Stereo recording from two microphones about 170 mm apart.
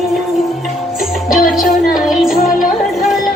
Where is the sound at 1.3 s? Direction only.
Centre (ahead or behind).